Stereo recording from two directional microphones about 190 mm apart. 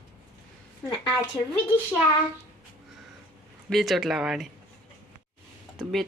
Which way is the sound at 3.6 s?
Centre (ahead or behind).